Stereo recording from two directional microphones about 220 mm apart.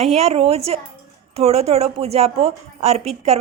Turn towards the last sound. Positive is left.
turn(degrees=-30)  # may be behind; listen again after turning